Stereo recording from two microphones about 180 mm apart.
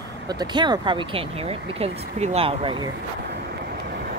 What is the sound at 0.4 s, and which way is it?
Speech, 25° right (ahead or behind).